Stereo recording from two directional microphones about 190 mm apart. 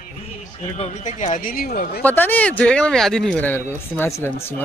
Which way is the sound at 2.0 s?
10° left (ahead or behind).